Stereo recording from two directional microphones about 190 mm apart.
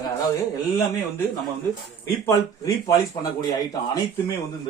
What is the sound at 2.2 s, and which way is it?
Speech, 15° left (ahead or behind).